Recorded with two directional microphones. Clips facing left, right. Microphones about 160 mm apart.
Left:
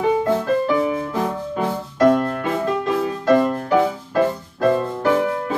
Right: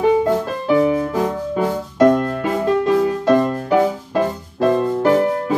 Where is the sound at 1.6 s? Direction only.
10° right (ahead or behind).